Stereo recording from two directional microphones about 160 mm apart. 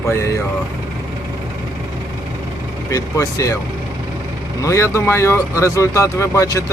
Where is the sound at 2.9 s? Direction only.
20° left (ahead or behind).